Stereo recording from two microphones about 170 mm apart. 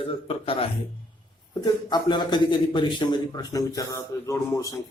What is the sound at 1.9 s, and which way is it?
A man's voice, 25° left (ahead or behind).